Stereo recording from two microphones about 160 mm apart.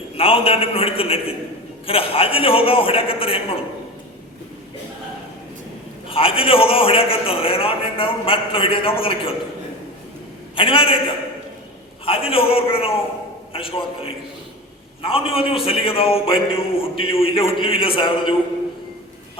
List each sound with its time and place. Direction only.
0.2 s a man's voice: 35° left (ahead or behind)
6.1 s a man's voice: 35° left (ahead or behind)
10.5 s a man's voice: 35° left (ahead or behind)
12.0 s a man's voice: 35° left (ahead or behind)